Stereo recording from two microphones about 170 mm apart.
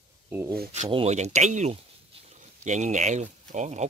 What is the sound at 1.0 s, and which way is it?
Speech, 40° right (ahead or behind).